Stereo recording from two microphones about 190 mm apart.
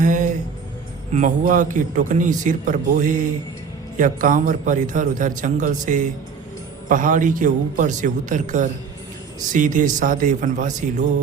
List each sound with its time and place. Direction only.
0.0 s music: 40° right (ahead or behind)
1.1 s a man's voice: 40° right (ahead or behind)